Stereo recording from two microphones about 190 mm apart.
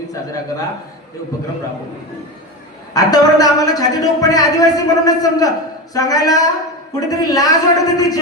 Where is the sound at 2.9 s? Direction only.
20° left (ahead or behind).